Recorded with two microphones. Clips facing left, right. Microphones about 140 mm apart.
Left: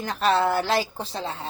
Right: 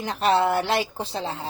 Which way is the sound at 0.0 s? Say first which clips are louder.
Right 1 dB; 25° right (ahead or behind).